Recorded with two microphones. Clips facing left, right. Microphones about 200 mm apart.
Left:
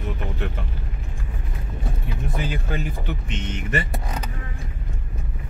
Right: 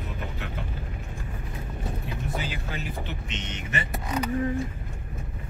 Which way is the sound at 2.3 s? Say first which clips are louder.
Left 9 dB; 50° left (ahead or behind).